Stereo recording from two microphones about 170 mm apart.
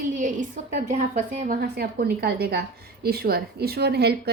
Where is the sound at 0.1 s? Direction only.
50° right (ahead or behind).